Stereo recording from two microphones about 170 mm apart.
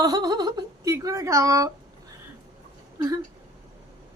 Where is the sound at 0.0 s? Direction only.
25° right (ahead or behind).